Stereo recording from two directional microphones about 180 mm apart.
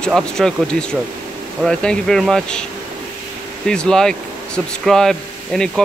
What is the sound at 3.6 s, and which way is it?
Speech, 5° left (ahead or behind).